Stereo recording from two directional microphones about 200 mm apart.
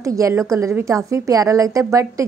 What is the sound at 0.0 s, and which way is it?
A woman's voice, 15° right (ahead or behind).